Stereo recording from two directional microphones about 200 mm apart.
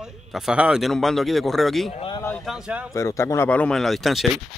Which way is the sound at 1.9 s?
25° left (ahead or behind).